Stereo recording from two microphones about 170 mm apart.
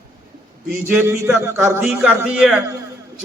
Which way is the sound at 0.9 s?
15° right (ahead or behind).